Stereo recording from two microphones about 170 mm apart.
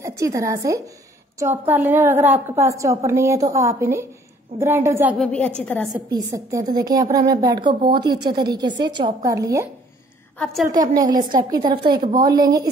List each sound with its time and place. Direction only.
0.0 s a woman's voice: 20° right (ahead or behind)
5.1 s a woman's voice: 5° left (ahead or behind)
6.0 s speech: 20° right (ahead or behind)
10.4 s a woman's voice: centre (ahead or behind)
10.7 s speech: 25° right (ahead or behind)